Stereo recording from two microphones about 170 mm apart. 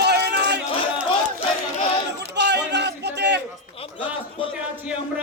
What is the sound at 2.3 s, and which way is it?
Music, 90° right.